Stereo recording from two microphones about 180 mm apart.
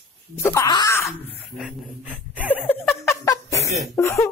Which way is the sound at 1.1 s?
10° left (ahead or behind).